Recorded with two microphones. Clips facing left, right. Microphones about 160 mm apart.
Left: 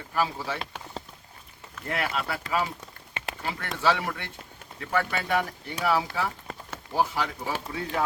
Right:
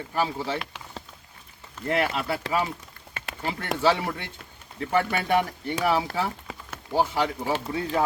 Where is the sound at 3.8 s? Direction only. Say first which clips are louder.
Right 2 dB; 25° right (ahead or behind).